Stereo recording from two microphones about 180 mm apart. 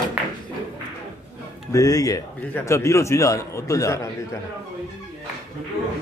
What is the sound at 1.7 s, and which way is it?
A man's voice, 20° left (ahead or behind).